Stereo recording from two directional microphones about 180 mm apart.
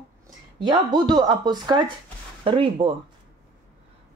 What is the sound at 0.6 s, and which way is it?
Speech, 25° right (ahead or behind).